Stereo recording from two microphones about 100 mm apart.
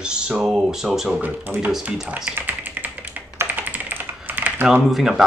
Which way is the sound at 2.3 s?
20° right (ahead or behind).